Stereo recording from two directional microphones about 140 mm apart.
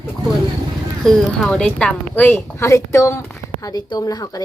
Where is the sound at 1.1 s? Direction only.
5° left (ahead or behind).